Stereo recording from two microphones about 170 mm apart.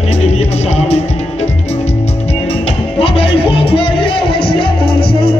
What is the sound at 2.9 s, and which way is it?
Music, 35° left (ahead or behind).